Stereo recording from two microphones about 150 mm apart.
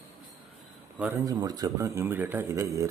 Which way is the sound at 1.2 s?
25° right (ahead or behind).